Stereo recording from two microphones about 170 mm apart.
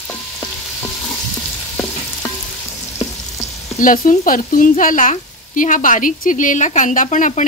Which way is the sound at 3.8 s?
50° left (ahead or behind).